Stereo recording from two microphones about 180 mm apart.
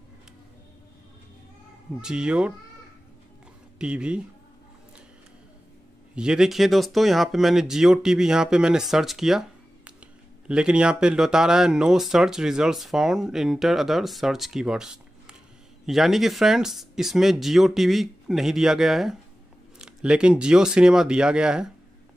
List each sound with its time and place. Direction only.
2.0 s speech: 5° right (ahead or behind)
3.7 s speech: 5° right (ahead or behind)
6.1 s speech: 5° right (ahead or behind)